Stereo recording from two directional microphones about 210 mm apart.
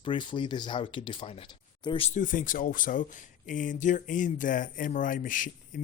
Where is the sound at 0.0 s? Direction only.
25° left (ahead or behind).